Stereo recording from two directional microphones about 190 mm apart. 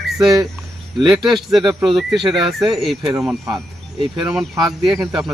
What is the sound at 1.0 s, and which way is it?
Speech, centre (ahead or behind).